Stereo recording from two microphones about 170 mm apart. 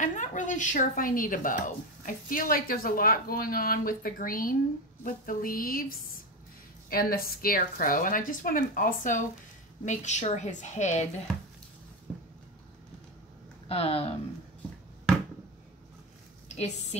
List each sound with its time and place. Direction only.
0.0 s a woman's voice: 50° left (ahead or behind)
6.9 s a woman's voice: 60° left (ahead or behind); by 11.1 s 45° left (ahead or behind)
13.7 s speech: 35° left (ahead or behind)
16.4 s a woman's voice: 40° left (ahead or behind)